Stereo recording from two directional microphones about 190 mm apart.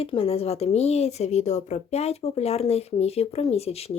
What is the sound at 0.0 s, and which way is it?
Speech, 30° left (ahead or behind).